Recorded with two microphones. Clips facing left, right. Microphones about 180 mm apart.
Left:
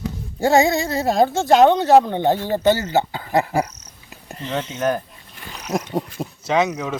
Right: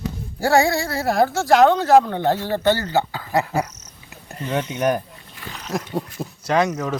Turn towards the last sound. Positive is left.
turn(degrees=0)  # may be behind; listen again after turning